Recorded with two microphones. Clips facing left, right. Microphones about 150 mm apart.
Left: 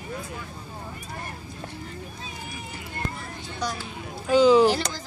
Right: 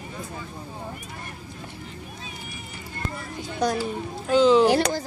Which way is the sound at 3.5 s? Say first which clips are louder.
Right 8 dB; 50° right (ahead or behind).